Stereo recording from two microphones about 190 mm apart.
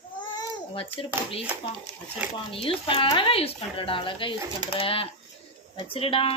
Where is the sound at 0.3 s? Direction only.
25° left (ahead or behind).